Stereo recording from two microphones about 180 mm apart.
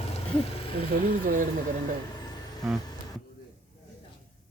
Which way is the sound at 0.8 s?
50° right (ahead or behind).